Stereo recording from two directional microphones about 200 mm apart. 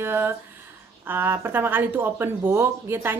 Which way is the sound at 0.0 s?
10° right (ahead or behind).